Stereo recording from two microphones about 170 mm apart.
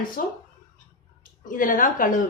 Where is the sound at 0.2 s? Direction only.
55° left (ahead or behind).